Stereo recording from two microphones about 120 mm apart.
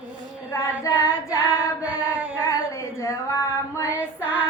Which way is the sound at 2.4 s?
30° left (ahead or behind).